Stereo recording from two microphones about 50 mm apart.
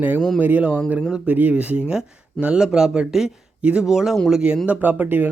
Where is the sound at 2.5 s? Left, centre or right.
Centre.